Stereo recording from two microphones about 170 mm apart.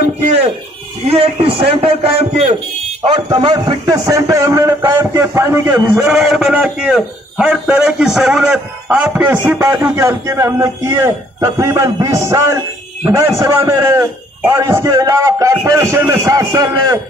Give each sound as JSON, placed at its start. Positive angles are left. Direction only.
{"t": 0.0, "sound": "a sound", "side_deg": -40}
{"t": 1.1, "sound": "a man's voice", "side_deg": -35}
{"t": 3.3, "sound": "a man's voice", "side_deg": -25}